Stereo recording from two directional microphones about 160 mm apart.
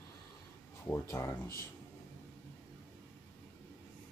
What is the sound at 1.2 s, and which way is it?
Speech, 20° left (ahead or behind).